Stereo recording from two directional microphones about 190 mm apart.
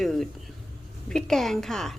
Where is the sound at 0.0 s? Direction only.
Centre (ahead or behind).